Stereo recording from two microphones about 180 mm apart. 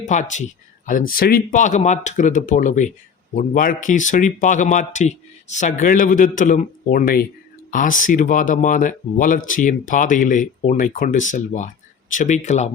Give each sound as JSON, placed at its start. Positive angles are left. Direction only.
{"t": 0.0, "sound": "speech", "side_deg": 45}